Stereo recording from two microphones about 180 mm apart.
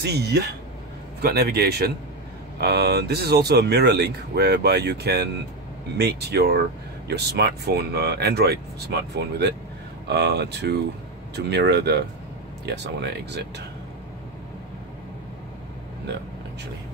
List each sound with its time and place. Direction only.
0.0 s speech: 65° right (ahead or behind)